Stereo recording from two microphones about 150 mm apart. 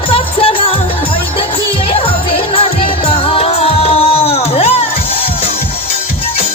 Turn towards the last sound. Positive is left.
turn(degrees=40)  # may be behind; listen again after turning